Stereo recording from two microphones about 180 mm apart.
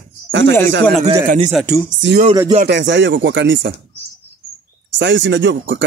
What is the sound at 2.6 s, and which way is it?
Speech, 85° right.